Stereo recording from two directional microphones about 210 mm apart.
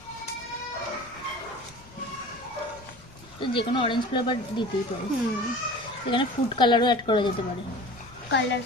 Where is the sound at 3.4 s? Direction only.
25° left (ahead or behind).